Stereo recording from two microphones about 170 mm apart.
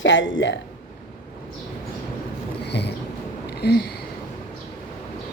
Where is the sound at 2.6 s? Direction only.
80° left.